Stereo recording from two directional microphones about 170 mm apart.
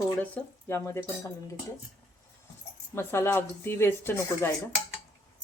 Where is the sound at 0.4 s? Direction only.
5° left (ahead or behind).